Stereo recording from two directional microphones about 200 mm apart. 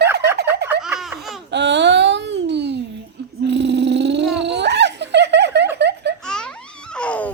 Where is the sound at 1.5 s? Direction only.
60° right (ahead or behind).